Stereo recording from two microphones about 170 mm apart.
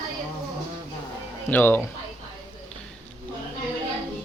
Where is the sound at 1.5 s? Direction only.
10° left (ahead or behind).